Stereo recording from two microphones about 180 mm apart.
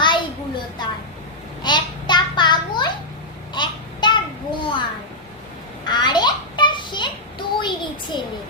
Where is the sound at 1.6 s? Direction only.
25° left (ahead or behind).